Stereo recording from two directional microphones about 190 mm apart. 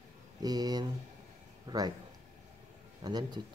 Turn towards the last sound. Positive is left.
turn(degrees=-20)  # may be behind; listen again after turning